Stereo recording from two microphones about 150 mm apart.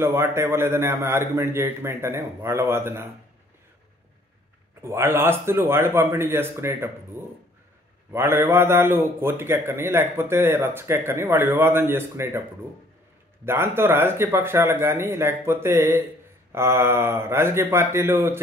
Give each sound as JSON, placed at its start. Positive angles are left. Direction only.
{"t": 0.0, "sound": "a man's voice", "side_deg": -15}
{"t": 4.8, "sound": "a man's voice", "side_deg": -15}
{"t": 13.5, "sound": "a man's voice", "side_deg": -15}